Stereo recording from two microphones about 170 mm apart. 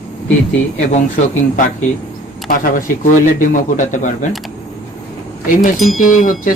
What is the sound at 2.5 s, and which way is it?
Speech, 55° left (ahead or behind).